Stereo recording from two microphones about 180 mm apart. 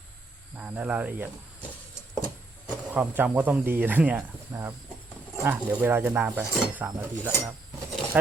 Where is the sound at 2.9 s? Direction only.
10° right (ahead or behind).